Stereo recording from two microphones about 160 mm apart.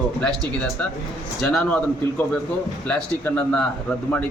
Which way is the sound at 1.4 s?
Centre (ahead or behind).